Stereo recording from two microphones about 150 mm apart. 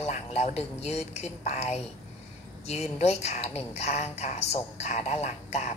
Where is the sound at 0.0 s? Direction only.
45° left (ahead or behind).